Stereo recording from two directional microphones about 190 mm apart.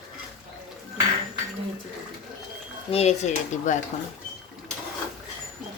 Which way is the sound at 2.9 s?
35° left (ahead or behind).